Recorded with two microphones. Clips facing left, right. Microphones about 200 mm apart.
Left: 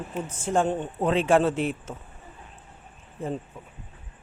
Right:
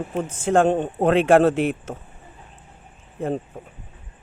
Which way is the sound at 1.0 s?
65° right (ahead or behind).